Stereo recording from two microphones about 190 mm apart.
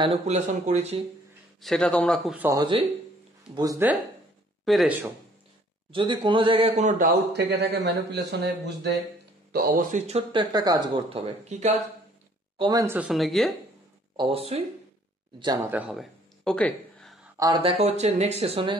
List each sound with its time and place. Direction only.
0.0 s speech: 40° right (ahead or behind)
1.6 s speech: 5° left (ahead or behind)
2.5 s speech: 25° right (ahead or behind)
4.6 s speech: centre (ahead or behind)
5.9 s a man's voice: 25° right (ahead or behind)
12.5 s speech: 20° right (ahead or behind); by 13.6 s centre (ahead or behind)
14.1 s speech: 30° right (ahead or behind)
15.7 s a sound: 5° right (ahead or behind)
17.4 s speech: 25° right (ahead or behind)